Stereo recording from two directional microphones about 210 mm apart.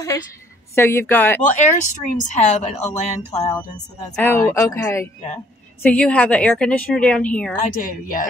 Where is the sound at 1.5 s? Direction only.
35° left (ahead or behind).